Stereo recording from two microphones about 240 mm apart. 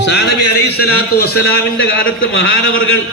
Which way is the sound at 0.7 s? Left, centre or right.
Left.